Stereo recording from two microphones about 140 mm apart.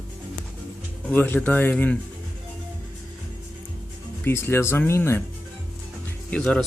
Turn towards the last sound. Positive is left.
turn(degrees=5)  # may be behind; listen again after turning